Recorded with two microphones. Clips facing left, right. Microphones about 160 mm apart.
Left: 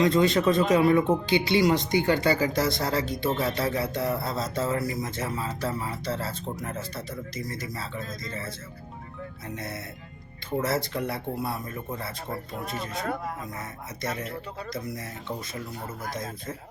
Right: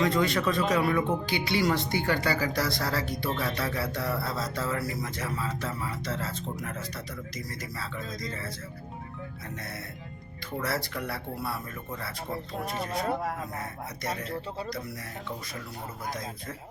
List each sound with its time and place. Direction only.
0.0 s speech: 25° left (ahead or behind)
9.6 s speech: 25° left (ahead or behind)